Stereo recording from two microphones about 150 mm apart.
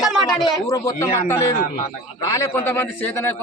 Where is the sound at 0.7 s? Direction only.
20° left (ahead or behind).